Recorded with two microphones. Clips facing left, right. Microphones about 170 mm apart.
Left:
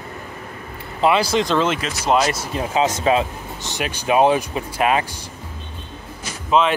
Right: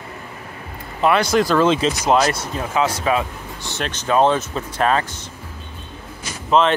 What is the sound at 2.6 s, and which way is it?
Speech, 20° left (ahead or behind).